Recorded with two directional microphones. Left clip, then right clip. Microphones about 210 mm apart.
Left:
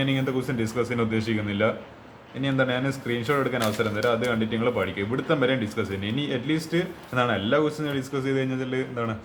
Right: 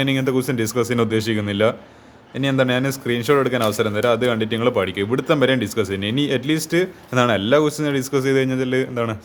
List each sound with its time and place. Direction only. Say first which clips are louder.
0.0 s speech: right 6 dB; 45° right (ahead or behind)